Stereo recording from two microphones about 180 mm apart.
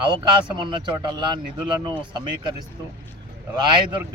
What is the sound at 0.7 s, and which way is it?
Speech, 25° right (ahead or behind).